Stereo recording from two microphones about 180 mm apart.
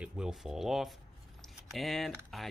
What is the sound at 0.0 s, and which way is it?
Speech, 5° right (ahead or behind).